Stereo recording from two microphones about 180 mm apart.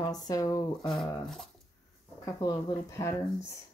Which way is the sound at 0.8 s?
Centre (ahead or behind).